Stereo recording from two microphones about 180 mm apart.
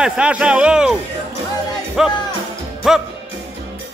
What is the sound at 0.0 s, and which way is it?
Speech, 5° right (ahead or behind).